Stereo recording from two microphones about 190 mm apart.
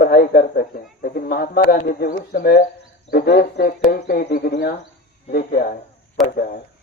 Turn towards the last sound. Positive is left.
turn(degrees=0)  # may be behind; listen again after turning